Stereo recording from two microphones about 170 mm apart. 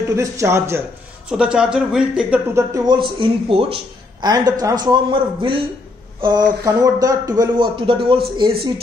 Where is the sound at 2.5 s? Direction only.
20° right (ahead or behind).